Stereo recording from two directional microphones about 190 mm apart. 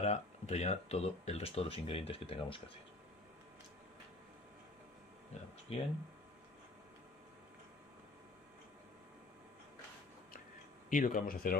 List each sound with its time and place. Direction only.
0.0 s speech: 35° left (ahead or behind)
5.7 s speech: 30° left (ahead or behind)
10.9 s speech: 45° left (ahead or behind)